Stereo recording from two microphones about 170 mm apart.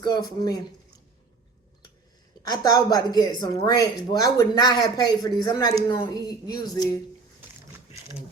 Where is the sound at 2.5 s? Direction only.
25° left (ahead or behind).